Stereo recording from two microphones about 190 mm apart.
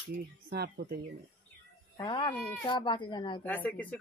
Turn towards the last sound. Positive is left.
turn(degrees=10)  # may be behind; listen again after turning